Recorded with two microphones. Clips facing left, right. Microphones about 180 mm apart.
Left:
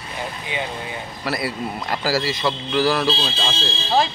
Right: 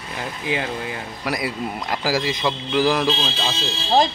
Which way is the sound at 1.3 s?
15° right (ahead or behind).